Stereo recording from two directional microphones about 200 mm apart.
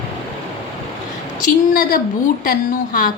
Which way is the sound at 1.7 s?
45° left (ahead or behind).